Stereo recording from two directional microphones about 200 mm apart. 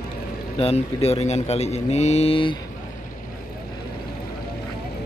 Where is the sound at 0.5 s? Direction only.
30° left (ahead or behind).